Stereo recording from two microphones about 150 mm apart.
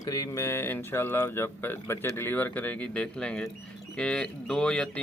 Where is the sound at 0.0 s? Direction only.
25° left (ahead or behind).